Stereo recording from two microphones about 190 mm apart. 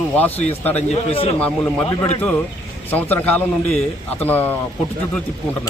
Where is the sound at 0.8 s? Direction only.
35° left (ahead or behind).